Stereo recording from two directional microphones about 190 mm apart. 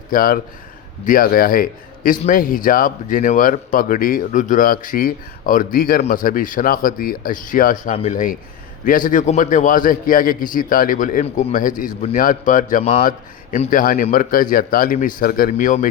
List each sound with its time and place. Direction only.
0.1 s a man's voice: 50° left (ahead or behind)